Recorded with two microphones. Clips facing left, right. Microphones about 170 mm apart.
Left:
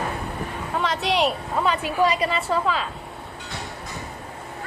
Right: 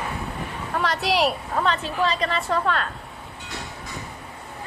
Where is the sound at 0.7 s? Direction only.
Centre (ahead or behind).